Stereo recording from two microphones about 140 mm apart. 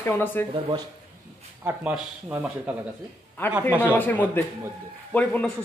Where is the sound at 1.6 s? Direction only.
10° right (ahead or behind).